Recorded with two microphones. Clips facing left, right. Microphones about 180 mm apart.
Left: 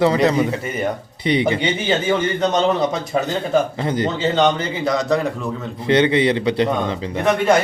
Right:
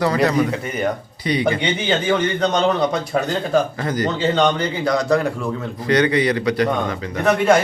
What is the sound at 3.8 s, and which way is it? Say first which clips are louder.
Speech: left 1 dB; 25° left (ahead or behind).